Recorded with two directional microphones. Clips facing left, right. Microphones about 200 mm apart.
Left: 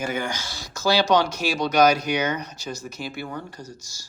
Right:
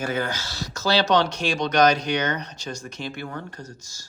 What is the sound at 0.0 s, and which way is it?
Speech, 10° left (ahead or behind).